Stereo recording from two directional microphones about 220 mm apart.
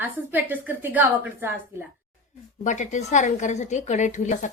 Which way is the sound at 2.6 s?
35° left (ahead or behind).